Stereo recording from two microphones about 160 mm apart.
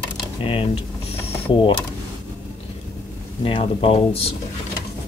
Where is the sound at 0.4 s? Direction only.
35° left (ahead or behind).